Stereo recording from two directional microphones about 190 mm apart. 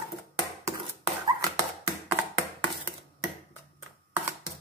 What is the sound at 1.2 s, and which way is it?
Dog, 25° right (ahead or behind).